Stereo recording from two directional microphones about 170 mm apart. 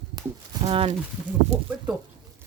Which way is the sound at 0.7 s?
35° right (ahead or behind).